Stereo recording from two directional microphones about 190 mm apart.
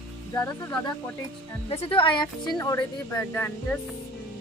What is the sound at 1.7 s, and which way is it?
A woman's voice, 30° left (ahead or behind).